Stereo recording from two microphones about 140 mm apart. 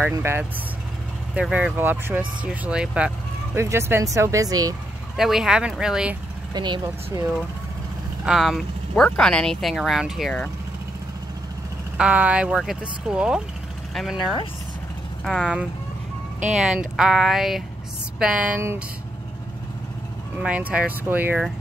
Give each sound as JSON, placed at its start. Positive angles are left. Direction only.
{"t": 0.0, "sound": "speech", "side_deg": -15}
{"t": 3.5, "sound": "speech", "side_deg": -20}
{"t": 5.1, "sound": "speech", "side_deg": 0}
{"t": 6.5, "sound": "speech", "side_deg": -30}
{"t": 8.3, "sound": "speech", "side_deg": 0}
{"t": 12.0, "sound": "speech", "side_deg": -10}
{"t": 14.1, "sound": "speech", "side_deg": 35}
{"t": 15.2, "sound": "speech", "side_deg": -5}
{"t": 20.3, "sound": "speech", "side_deg": -10}